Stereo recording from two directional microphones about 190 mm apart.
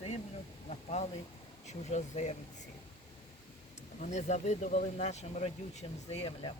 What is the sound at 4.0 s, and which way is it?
Speech, 40° left (ahead or behind).